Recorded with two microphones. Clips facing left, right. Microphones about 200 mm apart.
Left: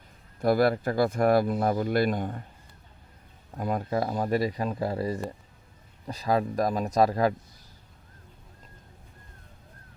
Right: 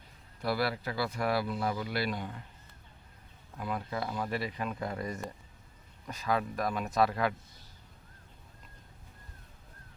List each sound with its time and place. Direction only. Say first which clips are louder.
0.4 s speech: left 9 dB; 45° left (ahead or behind)
3.5 s speech: left 8 dB; 45° left (ahead or behind)